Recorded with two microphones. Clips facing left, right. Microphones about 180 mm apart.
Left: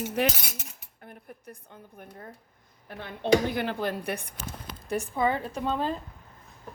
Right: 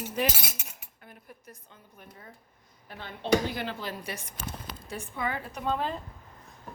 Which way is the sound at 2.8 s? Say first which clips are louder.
Left 3 dB; 55° left (ahead or behind).